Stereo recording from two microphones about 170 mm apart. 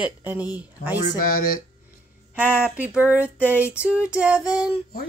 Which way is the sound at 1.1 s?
55° left (ahead or behind).